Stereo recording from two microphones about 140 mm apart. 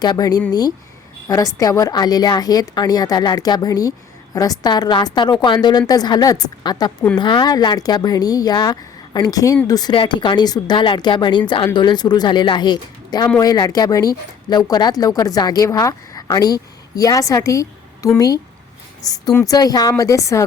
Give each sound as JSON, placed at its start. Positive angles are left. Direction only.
{"t": 0.0, "sound": "a woman's voice", "side_deg": 30}